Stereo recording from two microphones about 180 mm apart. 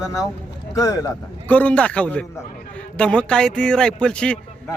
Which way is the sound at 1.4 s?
10° left (ahead or behind).